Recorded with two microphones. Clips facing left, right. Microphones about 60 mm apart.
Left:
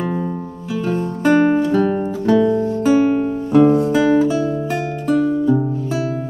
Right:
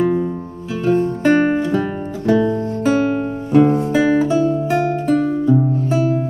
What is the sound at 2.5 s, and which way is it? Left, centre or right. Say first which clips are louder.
Music: left 3 dB; right.